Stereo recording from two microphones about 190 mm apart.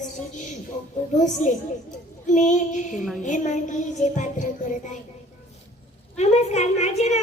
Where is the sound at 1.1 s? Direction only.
40° left (ahead or behind).